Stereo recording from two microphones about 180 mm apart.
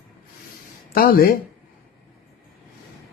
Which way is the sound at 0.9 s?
55° left (ahead or behind).